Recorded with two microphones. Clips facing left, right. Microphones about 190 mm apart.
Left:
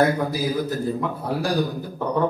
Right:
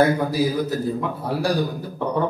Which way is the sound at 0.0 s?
Centre (ahead or behind).